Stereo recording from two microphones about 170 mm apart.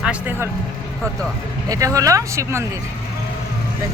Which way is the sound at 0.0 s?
10° right (ahead or behind).